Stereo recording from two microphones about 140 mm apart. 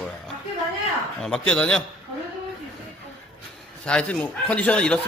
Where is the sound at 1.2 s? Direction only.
5° left (ahead or behind).